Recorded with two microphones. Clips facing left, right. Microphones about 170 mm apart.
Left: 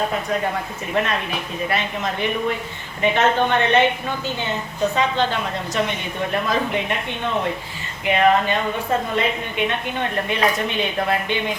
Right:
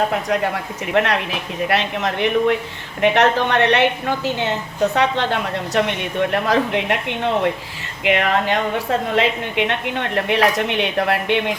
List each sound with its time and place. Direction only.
0.9 s a woman's voice: 75° right (ahead or behind)
8.0 s a woman's voice: 80° right